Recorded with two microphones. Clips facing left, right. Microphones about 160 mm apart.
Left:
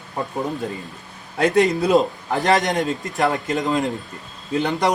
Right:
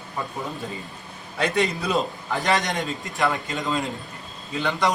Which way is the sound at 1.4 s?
40° left (ahead or behind).